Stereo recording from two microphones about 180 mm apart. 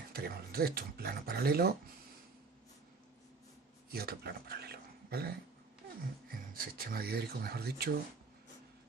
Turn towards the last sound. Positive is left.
turn(degrees=-60)  # may be behind; listen again after turning